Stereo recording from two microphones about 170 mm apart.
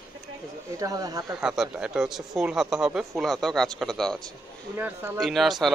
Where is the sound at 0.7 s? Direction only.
20° right (ahead or behind).